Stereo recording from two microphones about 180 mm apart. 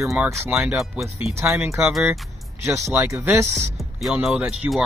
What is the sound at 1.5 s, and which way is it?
Speech, 15° right (ahead or behind).